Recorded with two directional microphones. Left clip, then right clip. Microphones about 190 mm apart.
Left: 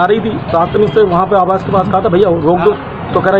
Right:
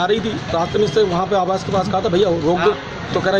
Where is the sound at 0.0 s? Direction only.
10° right (ahead or behind).